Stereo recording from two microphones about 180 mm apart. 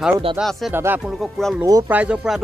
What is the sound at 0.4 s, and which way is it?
Speech, centre (ahead or behind).